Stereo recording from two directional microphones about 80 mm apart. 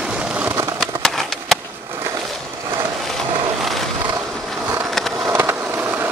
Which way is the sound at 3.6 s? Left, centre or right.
Centre.